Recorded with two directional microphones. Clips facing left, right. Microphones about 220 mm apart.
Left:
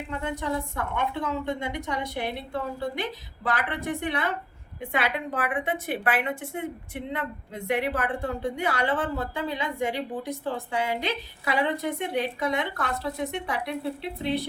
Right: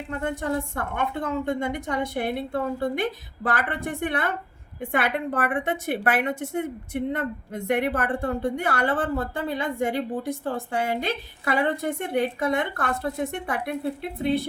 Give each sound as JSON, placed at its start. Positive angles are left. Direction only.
{"t": 0.1, "sound": "a woman's voice", "side_deg": -50}